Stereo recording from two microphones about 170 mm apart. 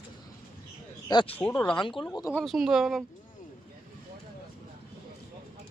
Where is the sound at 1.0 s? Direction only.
25° left (ahead or behind).